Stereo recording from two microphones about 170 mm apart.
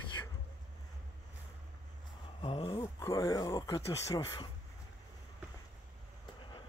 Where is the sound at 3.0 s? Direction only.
20° left (ahead or behind).